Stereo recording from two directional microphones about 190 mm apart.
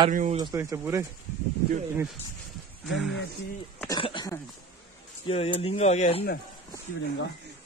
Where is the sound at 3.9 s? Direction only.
25° left (ahead or behind).